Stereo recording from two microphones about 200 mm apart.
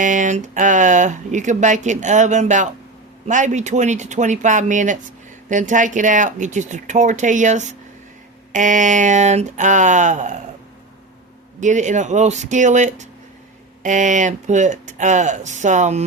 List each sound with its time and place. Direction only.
0.0 s speech: 40° right (ahead or behind)
11.6 s speech: 40° right (ahead or behind)